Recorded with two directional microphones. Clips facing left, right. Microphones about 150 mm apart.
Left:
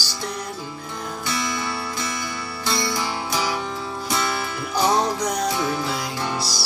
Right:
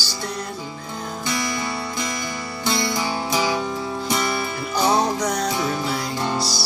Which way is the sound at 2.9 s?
15° right (ahead or behind).